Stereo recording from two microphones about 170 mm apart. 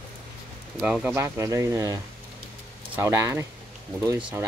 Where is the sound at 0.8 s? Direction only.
5° right (ahead or behind).